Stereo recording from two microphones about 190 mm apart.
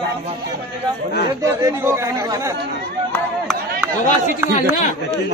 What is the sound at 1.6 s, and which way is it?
Speech, 15° right (ahead or behind).